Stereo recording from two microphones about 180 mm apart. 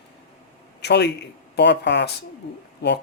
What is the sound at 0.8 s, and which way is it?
Speech, 70° left (ahead or behind).